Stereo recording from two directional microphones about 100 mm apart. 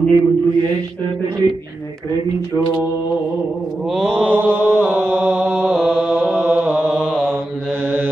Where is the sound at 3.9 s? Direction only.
Centre (ahead or behind).